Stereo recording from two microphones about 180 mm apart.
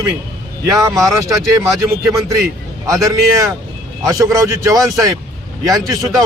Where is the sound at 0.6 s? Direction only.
20° right (ahead or behind).